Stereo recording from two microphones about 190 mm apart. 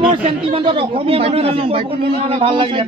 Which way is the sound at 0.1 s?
30° right (ahead or behind).